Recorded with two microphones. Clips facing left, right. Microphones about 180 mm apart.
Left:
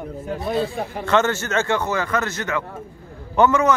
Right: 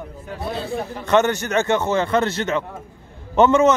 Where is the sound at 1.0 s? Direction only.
20° right (ahead or behind).